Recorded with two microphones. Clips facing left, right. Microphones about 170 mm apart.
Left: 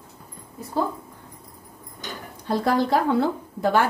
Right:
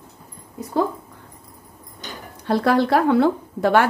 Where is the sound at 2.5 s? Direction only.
70° right (ahead or behind).